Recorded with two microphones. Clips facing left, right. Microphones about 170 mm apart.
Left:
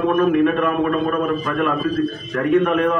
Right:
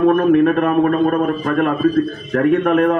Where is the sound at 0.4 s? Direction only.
45° right (ahead or behind).